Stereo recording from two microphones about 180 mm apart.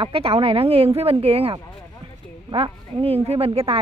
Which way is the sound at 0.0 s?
30° right (ahead or behind).